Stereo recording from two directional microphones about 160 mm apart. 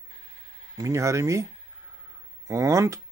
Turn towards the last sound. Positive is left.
turn(degrees=-20)  # may be behind; listen again after turning